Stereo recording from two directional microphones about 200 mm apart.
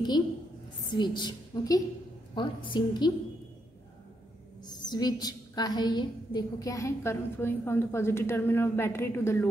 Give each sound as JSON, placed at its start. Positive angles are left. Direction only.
{"t": 0.8, "sound": "a woman's voice", "side_deg": 20}
{"t": 4.6, "sound": "a woman's voice", "side_deg": 20}